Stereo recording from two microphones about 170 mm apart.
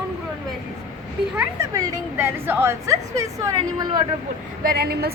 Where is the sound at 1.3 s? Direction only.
20° right (ahead or behind).